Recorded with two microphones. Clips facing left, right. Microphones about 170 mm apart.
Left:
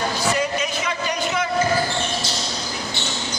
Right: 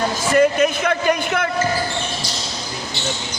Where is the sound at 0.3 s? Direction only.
55° right (ahead or behind).